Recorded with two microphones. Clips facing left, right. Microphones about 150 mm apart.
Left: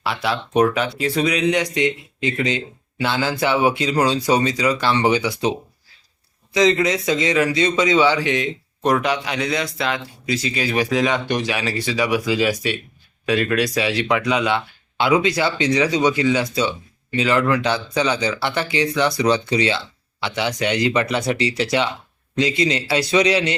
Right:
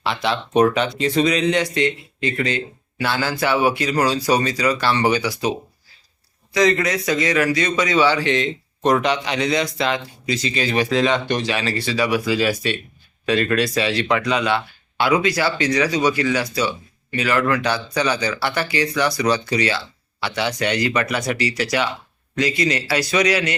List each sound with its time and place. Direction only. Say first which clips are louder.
0.0 s a man's voice: right 1 dB; 5° left (ahead or behind); by 23.6 s 25° left (ahead or behind)